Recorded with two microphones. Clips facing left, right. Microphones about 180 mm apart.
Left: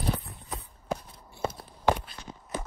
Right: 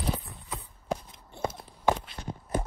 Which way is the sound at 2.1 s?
50° right (ahead or behind).